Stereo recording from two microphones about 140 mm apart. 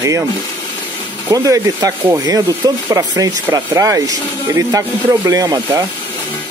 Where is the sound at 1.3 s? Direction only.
25° right (ahead or behind).